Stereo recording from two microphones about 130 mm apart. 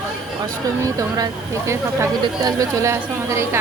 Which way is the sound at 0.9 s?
25° right (ahead or behind).